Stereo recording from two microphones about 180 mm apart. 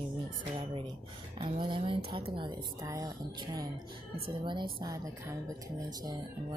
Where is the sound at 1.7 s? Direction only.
30° right (ahead or behind).